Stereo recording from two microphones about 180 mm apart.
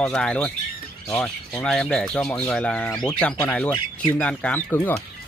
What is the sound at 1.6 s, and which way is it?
Speech, 5° left (ahead or behind).